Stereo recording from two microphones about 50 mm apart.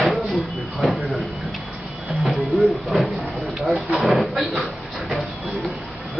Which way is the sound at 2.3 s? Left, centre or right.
Centre.